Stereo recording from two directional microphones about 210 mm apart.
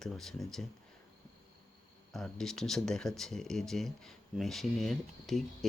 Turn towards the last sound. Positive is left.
turn(degrees=0)  # may be behind; listen again after turning